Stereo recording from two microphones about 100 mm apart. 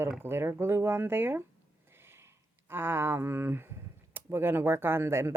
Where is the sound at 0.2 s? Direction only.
25° right (ahead or behind).